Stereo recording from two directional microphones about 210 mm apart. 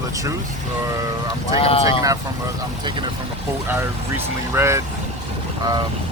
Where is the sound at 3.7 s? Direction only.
10° right (ahead or behind).